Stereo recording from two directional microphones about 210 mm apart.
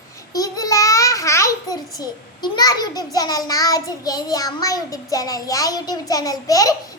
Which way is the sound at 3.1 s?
15° left (ahead or behind).